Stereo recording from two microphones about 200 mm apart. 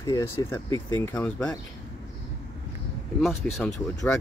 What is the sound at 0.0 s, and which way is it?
Speech, 15° left (ahead or behind).